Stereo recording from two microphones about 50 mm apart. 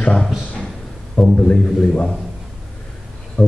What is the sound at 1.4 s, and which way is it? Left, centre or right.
Speech, centre.